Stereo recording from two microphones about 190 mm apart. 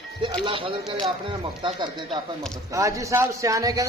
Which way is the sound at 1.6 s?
25° right (ahead or behind).